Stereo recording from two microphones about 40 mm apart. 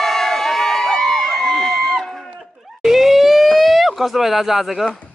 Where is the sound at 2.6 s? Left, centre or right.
Centre.